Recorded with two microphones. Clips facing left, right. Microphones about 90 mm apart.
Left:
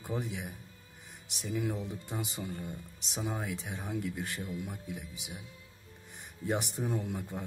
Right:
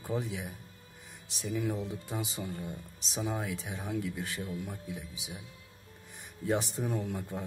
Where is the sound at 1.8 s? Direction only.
10° right (ahead or behind).